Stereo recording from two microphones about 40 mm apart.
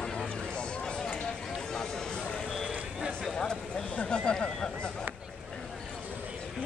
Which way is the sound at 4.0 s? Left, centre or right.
Left.